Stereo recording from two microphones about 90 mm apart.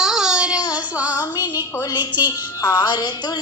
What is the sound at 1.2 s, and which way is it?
A woman's voice, 40° left (ahead or behind).